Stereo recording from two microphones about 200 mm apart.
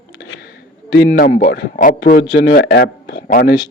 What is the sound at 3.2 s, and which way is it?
Speech, 45° left (ahead or behind).